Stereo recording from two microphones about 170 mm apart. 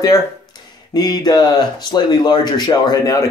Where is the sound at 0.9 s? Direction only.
25° left (ahead or behind).